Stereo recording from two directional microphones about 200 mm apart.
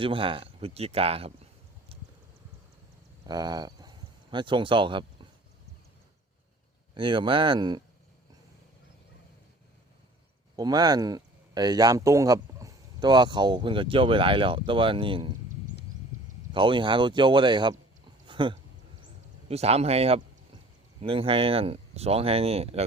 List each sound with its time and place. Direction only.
0.0 s speech: 25° right (ahead or behind)
1.9 s a sound: 30° right (ahead or behind)
3.2 s speech: 20° right (ahead or behind)
6.9 s speech: 25° right (ahead or behind)
10.6 s speech: 20° right (ahead or behind)
16.5 s speech: 25° right (ahead or behind)
18.3 s a sound: 25° right (ahead or behind)
19.5 s speech: 30° right (ahead or behind)